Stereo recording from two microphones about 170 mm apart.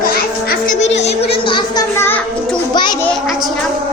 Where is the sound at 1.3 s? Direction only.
30° left (ahead or behind).